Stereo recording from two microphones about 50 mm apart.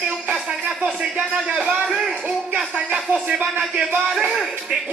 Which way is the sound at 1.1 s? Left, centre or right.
Right.